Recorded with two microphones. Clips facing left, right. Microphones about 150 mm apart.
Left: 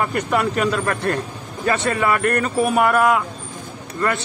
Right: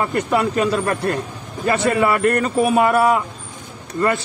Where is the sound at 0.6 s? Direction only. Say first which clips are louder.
Right 2 dB; 30° right (ahead or behind).